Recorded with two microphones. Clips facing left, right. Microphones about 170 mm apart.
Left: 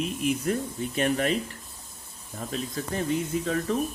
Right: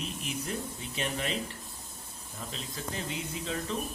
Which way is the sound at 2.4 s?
50° left (ahead or behind).